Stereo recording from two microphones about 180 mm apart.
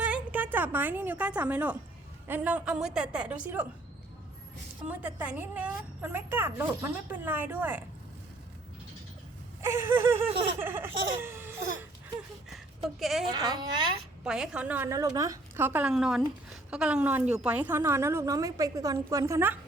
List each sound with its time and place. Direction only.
0.0 s a woman's voice: 10° right (ahead or behind)
4.9 s a woman's voice: 10° right (ahead or behind)
9.6 s a woman's voice: 15° right (ahead or behind)
10.6 s laughter: 10° right (ahead or behind)
12.5 s a sound: centre (ahead or behind)
13.3 s a woman's voice: 25° right (ahead or behind)
14.3 s a woman's voice: 5° right (ahead or behind)